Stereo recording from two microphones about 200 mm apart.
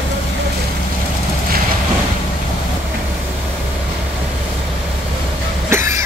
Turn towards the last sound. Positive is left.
turn(degrees=-15)  # may be behind; listen again after turning